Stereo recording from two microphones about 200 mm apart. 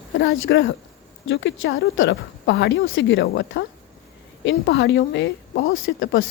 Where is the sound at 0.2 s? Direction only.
70° left (ahead or behind).